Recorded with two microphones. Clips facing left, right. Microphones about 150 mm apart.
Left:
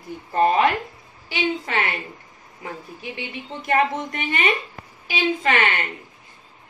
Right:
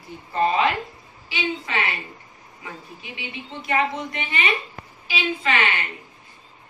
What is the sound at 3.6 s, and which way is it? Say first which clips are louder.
A woman's voice: left 3 dB; 50° left (ahead or behind).